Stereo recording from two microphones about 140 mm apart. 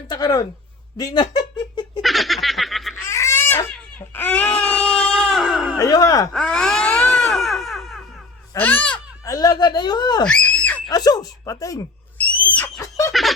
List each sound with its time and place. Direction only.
0.1 s speech: 30° left (ahead or behind)
2.0 s snicker: centre (ahead or behind)
3.0 s a sound: 20° left (ahead or behind); by 5.7 s 5° right (ahead or behind)
5.7 s a sound: 25° left (ahead or behind)
6.3 s baby cry: 5° left (ahead or behind)
8.5 s speech: 15° left (ahead or behind)
9.2 s speech: 25° left (ahead or behind)
10.2 s screaming: 10° left (ahead or behind)
10.8 s speech: 25° left (ahead or behind)
12.1 s owl: 10° left (ahead or behind)
12.8 s a sound: 20° left (ahead or behind)